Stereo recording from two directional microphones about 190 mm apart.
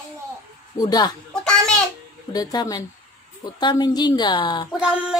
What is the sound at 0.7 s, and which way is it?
Speech, 20° left (ahead or behind).